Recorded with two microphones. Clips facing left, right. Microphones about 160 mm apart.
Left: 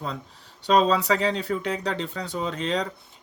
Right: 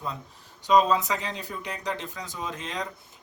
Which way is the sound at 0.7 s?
70° left (ahead or behind).